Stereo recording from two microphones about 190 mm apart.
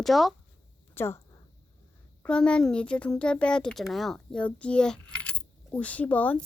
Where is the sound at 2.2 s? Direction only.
5° left (ahead or behind).